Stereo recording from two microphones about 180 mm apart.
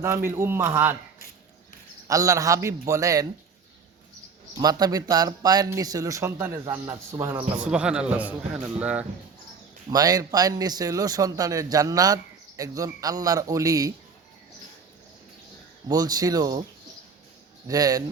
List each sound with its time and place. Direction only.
0.0 s a man's voice: 15° right (ahead or behind)
2.0 s a man's voice: 20° right (ahead or behind)
4.5 s a man's voice: 20° right (ahead or behind)
9.9 s a man's voice: 20° right (ahead or behind)
15.9 s a man's voice: 20° right (ahead or behind)
17.7 s a man's voice: 20° right (ahead or behind)